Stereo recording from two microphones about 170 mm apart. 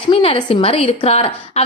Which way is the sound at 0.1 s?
30° left (ahead or behind).